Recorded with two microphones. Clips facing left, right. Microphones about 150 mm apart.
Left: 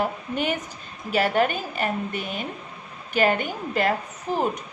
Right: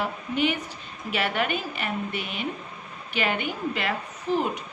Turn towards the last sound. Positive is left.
turn(degrees=40)  # may be behind; listen again after turning